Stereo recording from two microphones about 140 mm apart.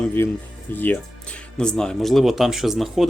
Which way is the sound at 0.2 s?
15° left (ahead or behind).